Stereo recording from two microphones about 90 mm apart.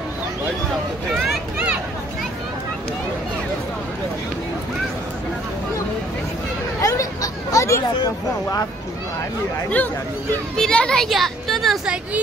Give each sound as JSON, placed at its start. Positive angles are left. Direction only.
{"t": 1.1, "sound": "vehicle", "side_deg": -15}
{"t": 6.8, "sound": "a sound", "side_deg": 40}
{"t": 8.0, "sound": "speech", "side_deg": 40}
{"t": 10.5, "sound": "speech", "side_deg": 10}
{"t": 11.8, "sound": "speech", "side_deg": -10}